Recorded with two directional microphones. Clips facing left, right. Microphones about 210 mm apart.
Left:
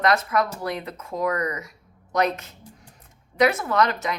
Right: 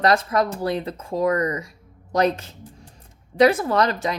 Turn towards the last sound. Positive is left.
turn(degrees=-35)  # may be behind; listen again after turning